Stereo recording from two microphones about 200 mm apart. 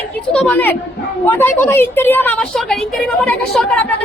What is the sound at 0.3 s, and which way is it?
A woman's voice, 5° left (ahead or behind).